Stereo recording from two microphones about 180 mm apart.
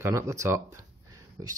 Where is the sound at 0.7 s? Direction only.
20° right (ahead or behind).